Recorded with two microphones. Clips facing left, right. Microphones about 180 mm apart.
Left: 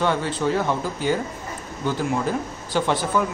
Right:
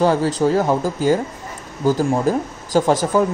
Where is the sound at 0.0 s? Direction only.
35° right (ahead or behind).